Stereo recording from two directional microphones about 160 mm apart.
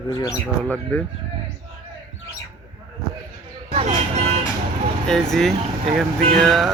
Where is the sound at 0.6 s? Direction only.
10° left (ahead or behind).